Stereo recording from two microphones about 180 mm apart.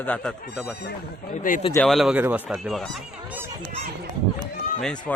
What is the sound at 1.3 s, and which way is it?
Speech, 45° left (ahead or behind).